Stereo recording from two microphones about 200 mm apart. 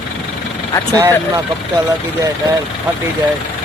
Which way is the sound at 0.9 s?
15° right (ahead or behind).